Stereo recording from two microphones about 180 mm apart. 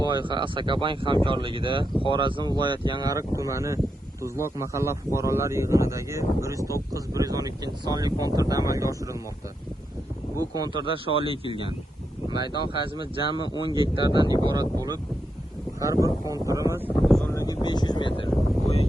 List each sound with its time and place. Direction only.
0.0 s speech: 25° right (ahead or behind)
10.5 s speech: 25° right (ahead or behind)
17.0 s speech: centre (ahead or behind)
17.3 s speech: 20° left (ahead or behind)